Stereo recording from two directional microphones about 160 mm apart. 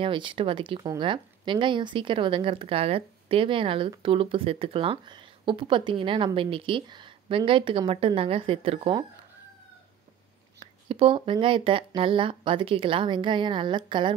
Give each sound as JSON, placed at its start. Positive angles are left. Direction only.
{"t": 0.0, "sound": "speech", "side_deg": -30}
{"t": 10.6, "sound": "speech", "side_deg": -35}